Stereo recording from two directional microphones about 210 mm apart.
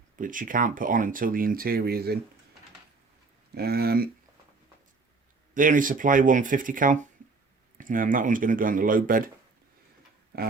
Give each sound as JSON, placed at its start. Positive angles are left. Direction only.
{"t": 0.2, "sound": "speech", "side_deg": -40}
{"t": 3.5, "sound": "speech", "side_deg": -50}
{"t": 5.5, "sound": "speech", "side_deg": -40}